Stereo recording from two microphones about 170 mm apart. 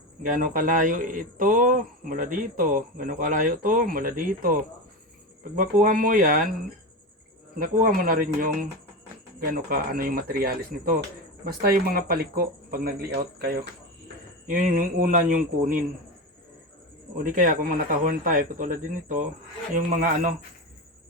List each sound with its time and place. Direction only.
0.2 s speech: 55° right (ahead or behind)
7.6 s speech: 55° right (ahead or behind)
9.4 s speech: 55° right (ahead or behind)
17.2 s speech: 55° right (ahead or behind)